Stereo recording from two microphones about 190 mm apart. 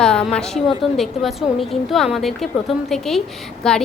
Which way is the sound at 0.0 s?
5° left (ahead or behind).